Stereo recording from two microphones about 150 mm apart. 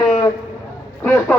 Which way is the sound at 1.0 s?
15° left (ahead or behind).